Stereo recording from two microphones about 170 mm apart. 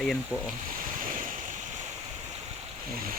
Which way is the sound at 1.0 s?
55° right (ahead or behind).